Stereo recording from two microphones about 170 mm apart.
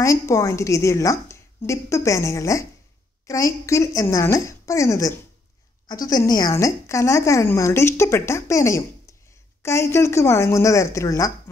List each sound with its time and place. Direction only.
0.0 s a woman's voice: 15° left (ahead or behind)